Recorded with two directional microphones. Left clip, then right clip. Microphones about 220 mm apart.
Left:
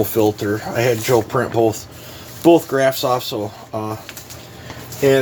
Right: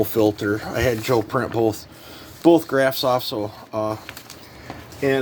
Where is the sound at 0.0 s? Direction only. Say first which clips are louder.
Left 2 dB; 40° right (ahead or behind).